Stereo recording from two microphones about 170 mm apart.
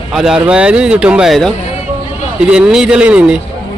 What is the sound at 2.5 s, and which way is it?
Speech, 5° right (ahead or behind).